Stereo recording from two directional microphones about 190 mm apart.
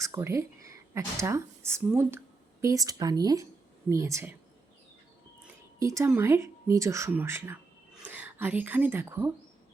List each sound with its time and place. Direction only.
0.0 s speech: 15° right (ahead or behind)
5.8 s speech: 15° right (ahead or behind)